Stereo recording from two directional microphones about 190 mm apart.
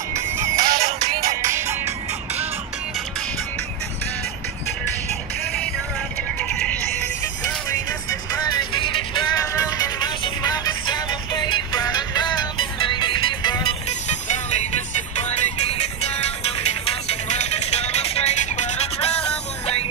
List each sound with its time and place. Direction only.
0.1 s music: 15° right (ahead or behind)
5.4 s music: 5° left (ahead or behind)
8.5 s music: 25° left (ahead or behind)
14.2 s music: 40° left (ahead or behind)